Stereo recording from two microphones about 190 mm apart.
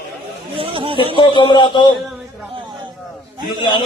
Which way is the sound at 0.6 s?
30° right (ahead or behind).